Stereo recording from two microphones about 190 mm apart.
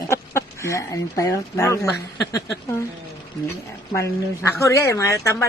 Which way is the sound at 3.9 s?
15° left (ahead or behind).